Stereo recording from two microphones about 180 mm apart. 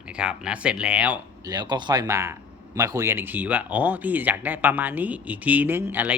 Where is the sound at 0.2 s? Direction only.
5° right (ahead or behind).